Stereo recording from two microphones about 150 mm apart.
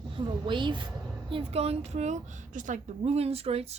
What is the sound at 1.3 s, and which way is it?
Speech, 40° right (ahead or behind).